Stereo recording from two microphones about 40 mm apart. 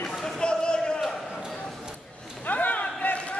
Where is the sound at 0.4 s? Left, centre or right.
Left.